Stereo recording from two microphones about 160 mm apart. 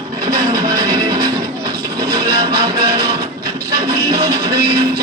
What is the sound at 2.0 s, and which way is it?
Music, 70° right (ahead or behind).